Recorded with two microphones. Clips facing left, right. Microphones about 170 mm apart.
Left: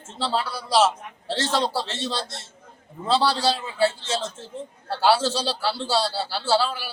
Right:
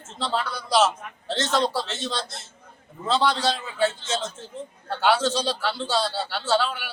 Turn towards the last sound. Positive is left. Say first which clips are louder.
# left 1 dB
turn(degrees=30)  # may be behind; listen again after turning